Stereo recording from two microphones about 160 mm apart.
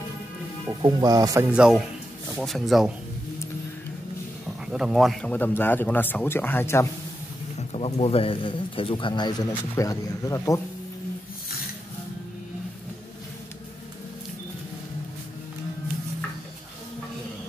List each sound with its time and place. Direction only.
0.8 s speech: 25° right (ahead or behind)
1.5 s speech: 5° right (ahead or behind)
4.6 s speech: 5° right (ahead or behind)
5.3 s speech: 10° left (ahead or behind)
7.5 s speech: 40° left (ahead or behind); by 10.6 s 20° left (ahead or behind)